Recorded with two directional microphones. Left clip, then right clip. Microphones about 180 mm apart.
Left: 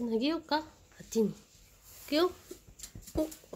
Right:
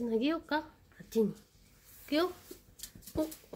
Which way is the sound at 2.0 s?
10° left (ahead or behind).